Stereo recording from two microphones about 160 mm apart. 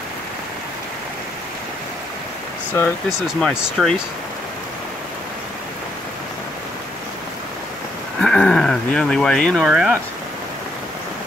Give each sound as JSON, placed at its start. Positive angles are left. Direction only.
{"t": 3.3, "sound": "speech", "side_deg": 0}
{"t": 8.2, "sound": "speech", "side_deg": 5}